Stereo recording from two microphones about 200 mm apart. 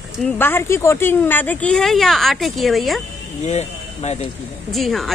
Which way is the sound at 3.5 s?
35° left (ahead or behind).